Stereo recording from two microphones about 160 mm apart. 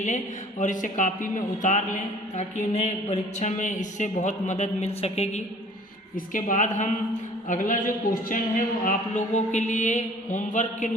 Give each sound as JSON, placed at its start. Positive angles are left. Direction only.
{"t": 0.6, "sound": "a man's voice", "side_deg": 55}
{"t": 6.1, "sound": "a man's voice", "side_deg": 55}